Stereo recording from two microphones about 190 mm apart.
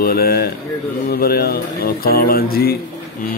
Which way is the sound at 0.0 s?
55° left (ahead or behind).